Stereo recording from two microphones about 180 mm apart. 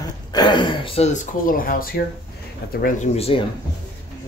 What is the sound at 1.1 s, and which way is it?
Speech, 50° left (ahead or behind).